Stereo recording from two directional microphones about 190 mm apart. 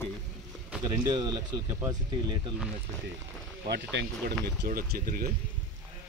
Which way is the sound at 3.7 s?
60° right (ahead or behind).